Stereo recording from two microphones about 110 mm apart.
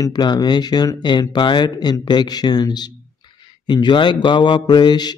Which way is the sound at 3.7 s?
45° left (ahead or behind).